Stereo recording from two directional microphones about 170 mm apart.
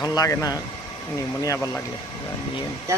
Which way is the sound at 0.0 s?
20° left (ahead or behind).